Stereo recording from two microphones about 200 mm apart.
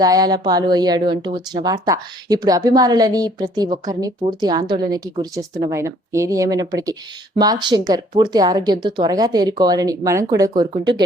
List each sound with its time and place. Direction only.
0.0 s speech: 20° right (ahead or behind)